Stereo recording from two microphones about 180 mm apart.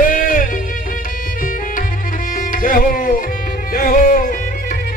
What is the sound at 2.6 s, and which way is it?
Music, 50° left (ahead or behind).